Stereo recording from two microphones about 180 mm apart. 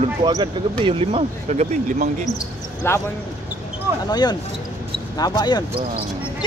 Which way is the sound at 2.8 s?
15° left (ahead or behind).